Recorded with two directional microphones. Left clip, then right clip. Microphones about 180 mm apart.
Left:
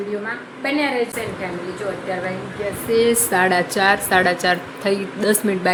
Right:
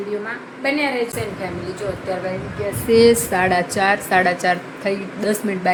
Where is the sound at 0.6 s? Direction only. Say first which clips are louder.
Right 1 dB; 5° right (ahead or behind).